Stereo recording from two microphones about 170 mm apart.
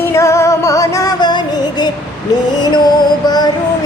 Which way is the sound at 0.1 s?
15° left (ahead or behind).